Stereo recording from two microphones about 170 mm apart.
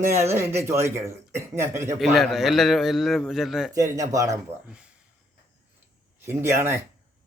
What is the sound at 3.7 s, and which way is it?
Speech, 20° right (ahead or behind).